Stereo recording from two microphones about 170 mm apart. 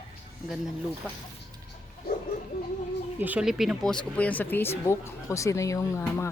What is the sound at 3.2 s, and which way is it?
Speech, 10° right (ahead or behind).